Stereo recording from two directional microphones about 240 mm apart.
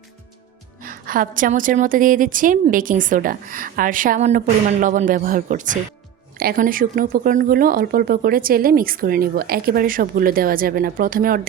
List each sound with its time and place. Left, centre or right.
0.8 s speech: right